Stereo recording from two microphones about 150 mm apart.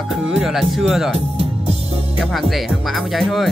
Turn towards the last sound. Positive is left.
turn(degrees=0)  # may be behind; listen again after turning